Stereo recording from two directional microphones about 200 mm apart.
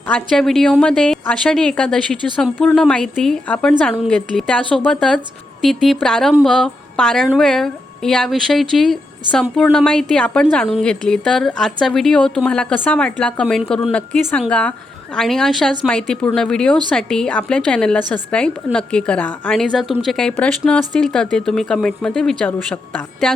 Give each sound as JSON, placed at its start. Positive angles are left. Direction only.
{"t": 0.1, "sound": "a woman's voice", "side_deg": 0}